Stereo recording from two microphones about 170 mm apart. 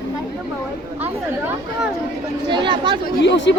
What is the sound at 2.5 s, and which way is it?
Speech, 30° right (ahead or behind).